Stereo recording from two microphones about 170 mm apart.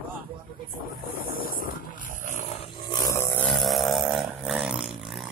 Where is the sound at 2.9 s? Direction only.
20° left (ahead or behind).